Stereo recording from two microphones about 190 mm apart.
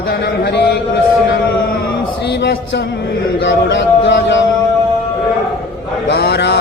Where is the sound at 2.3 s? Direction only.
60° left (ahead or behind).